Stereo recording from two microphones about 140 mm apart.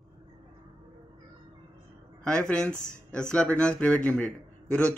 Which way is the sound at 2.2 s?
5° left (ahead or behind).